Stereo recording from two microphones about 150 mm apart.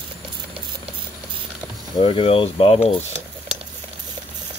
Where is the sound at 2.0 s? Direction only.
35° left (ahead or behind).